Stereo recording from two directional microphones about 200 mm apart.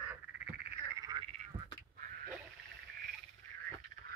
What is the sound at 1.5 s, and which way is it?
Duck, 25° right (ahead or behind).